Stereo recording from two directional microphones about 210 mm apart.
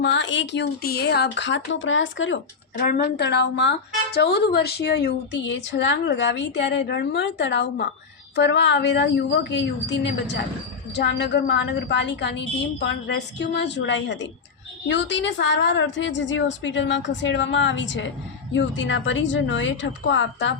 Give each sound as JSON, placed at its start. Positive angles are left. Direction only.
{"t": 0.0, "sound": "speech", "side_deg": 60}
{"t": 2.7, "sound": "a woman's voice", "side_deg": 40}
{"t": 3.2, "sound": "speech", "side_deg": 55}